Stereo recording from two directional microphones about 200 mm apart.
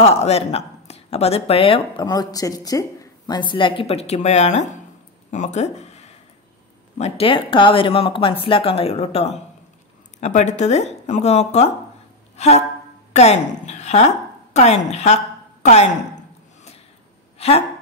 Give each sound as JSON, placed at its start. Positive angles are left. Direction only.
{"t": 0.0, "sound": "a woman's voice", "side_deg": 30}
{"t": 13.7, "sound": "a sound", "side_deg": 35}
{"t": 14.5, "sound": "a woman's voice", "side_deg": 35}
{"t": 17.4, "sound": "speech", "side_deg": 30}